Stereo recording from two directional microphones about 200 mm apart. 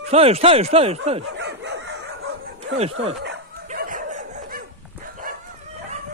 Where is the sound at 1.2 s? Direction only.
60° right (ahead or behind).